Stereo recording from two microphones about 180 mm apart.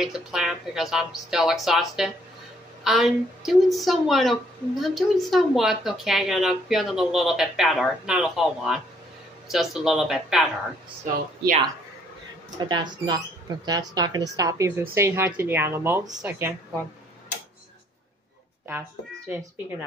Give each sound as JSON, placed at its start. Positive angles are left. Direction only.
{"t": 0.0, "sound": "a woman's voice", "side_deg": -5}
{"t": 12.5, "sound": "speech", "side_deg": -25}
{"t": 18.7, "sound": "speech", "side_deg": -10}